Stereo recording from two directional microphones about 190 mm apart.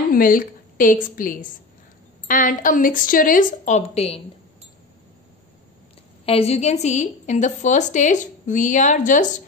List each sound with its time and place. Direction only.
0.1 s a woman's voice: 50° left (ahead or behind); by 4.2 s 30° left (ahead or behind)
6.2 s a woman's voice: 30° left (ahead or behind)